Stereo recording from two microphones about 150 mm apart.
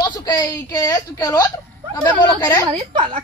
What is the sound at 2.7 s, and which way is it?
Speech, 35° right (ahead or behind).